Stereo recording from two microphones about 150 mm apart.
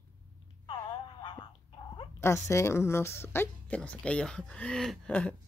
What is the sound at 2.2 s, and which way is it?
Speech, 20° left (ahead or behind).